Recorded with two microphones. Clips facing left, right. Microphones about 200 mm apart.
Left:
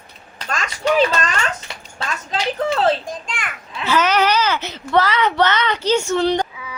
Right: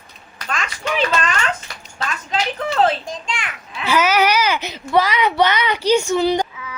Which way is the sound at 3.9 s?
10° right (ahead or behind).